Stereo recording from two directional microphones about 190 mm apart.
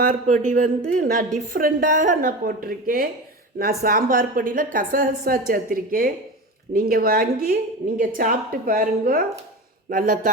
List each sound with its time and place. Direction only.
0.0 s a woman's voice: 45° right (ahead or behind)